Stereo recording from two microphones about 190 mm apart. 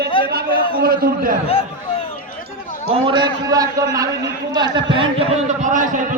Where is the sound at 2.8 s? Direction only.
30° right (ahead or behind).